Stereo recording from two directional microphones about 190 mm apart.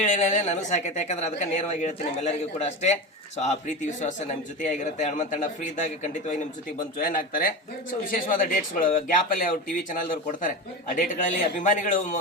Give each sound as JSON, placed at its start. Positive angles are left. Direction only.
{"t": 0.0, "sound": "speech", "side_deg": 40}
{"t": 11.6, "sound": "speech", "side_deg": 40}